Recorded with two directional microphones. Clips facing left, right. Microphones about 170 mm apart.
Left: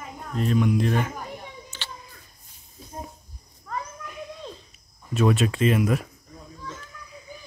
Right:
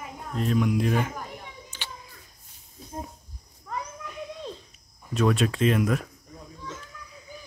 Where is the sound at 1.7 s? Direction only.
15° right (ahead or behind).